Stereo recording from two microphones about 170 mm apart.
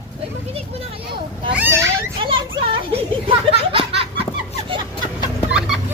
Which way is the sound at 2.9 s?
35° right (ahead or behind).